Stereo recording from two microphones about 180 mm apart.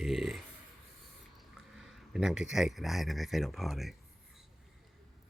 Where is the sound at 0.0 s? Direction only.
Centre (ahead or behind).